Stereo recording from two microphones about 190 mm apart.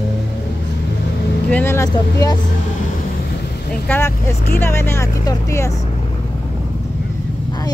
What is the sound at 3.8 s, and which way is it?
Speech, 10° left (ahead or behind).